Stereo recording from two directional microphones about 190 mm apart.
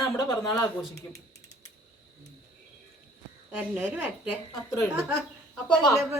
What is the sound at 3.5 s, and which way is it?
Speech, 10° right (ahead or behind).